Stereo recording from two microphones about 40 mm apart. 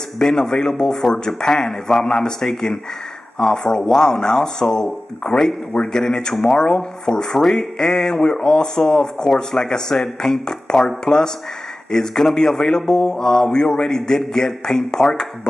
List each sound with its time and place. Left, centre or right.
0.2 s speech: centre
5.9 s speech: centre
11.9 s speech: centre